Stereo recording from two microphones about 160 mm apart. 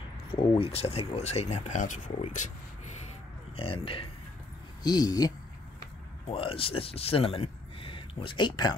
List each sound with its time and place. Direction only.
0.6 s speech: 40° left (ahead or behind)
3.5 s speech: 35° left (ahead or behind)
4.8 s speech: 25° left (ahead or behind)
6.2 s speech: 35° left (ahead or behind)